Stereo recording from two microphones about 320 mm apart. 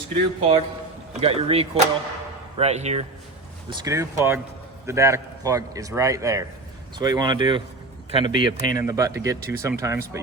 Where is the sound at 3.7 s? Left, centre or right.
Centre.